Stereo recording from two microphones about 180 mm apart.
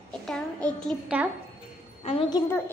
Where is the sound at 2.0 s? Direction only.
30° left (ahead or behind).